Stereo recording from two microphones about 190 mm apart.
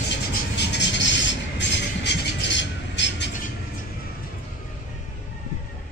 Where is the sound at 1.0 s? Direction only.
70° left (ahead or behind).